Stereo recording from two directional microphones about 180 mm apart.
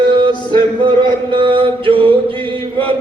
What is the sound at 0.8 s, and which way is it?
Chant, 25° right (ahead or behind).